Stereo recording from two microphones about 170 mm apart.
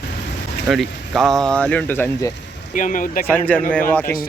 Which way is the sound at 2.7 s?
50° left (ahead or behind).